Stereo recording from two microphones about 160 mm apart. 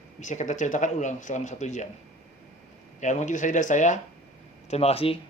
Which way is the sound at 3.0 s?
50° left (ahead or behind).